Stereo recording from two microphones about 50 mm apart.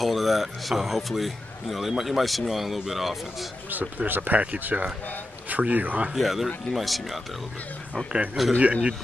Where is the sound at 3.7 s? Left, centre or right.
Right.